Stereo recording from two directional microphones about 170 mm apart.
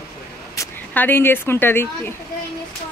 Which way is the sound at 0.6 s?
10° left (ahead or behind).